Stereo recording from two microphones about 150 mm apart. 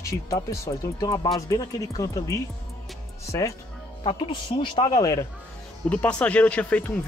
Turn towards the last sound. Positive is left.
turn(degrees=10)  # may be behind; listen again after turning